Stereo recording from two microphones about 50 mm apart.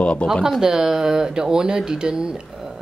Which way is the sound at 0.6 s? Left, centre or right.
Centre.